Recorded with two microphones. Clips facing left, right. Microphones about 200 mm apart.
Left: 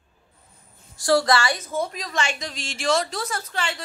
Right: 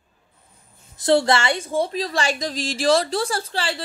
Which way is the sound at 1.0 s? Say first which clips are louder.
Right 2 dB; 25° right (ahead or behind).